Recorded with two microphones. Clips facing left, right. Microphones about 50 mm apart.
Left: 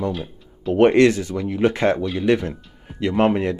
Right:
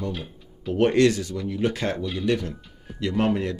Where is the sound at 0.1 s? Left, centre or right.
Centre.